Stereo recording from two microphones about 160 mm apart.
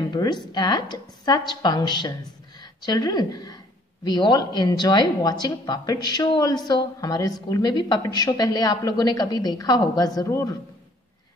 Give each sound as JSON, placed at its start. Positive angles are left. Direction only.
{"t": 0.1, "sound": "speech", "side_deg": 25}